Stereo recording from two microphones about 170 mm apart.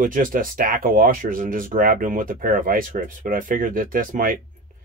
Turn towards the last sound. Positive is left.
turn(degrees=-55)  # may be behind; listen again after turning